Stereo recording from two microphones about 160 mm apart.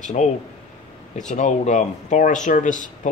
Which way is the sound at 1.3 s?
50° left (ahead or behind).